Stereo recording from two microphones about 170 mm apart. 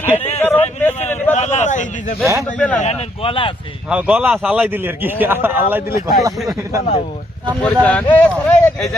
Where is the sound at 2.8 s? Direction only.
40° left (ahead or behind).